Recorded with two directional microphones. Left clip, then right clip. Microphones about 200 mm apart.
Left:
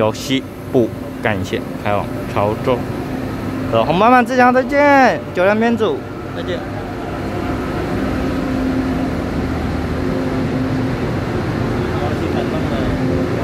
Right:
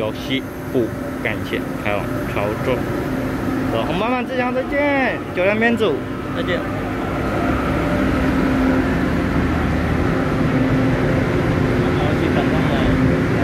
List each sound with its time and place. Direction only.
0.0 s speech: 40° left (ahead or behind)
1.9 s speech: 25° left (ahead or behind)
3.7 s speech: 35° left (ahead or behind)
5.4 s speech: 15° left (ahead or behind)